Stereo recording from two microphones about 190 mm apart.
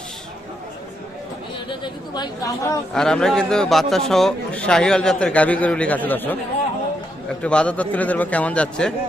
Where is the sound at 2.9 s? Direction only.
5° left (ahead or behind).